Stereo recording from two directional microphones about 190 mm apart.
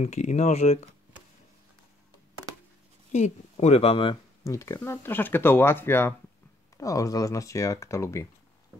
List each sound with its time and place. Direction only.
0.0 s speech: 35° left (ahead or behind)
3.1 s speech: 40° left (ahead or behind)
4.5 s speech: 15° left (ahead or behind)